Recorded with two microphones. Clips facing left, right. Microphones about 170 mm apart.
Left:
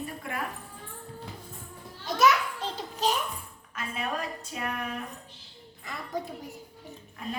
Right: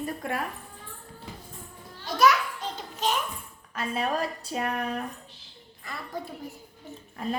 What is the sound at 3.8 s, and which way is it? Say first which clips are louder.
A woman's voice: right 5 dB; 35° right (ahead or behind).